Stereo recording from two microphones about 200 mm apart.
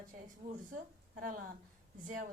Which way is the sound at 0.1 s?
40° right (ahead or behind).